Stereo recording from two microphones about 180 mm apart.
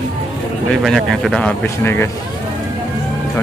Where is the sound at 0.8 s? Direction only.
Centre (ahead or behind).